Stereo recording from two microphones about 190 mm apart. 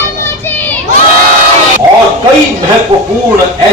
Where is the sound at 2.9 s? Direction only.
35° right (ahead or behind).